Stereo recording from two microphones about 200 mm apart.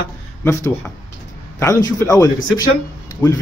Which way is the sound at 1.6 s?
15° left (ahead or behind).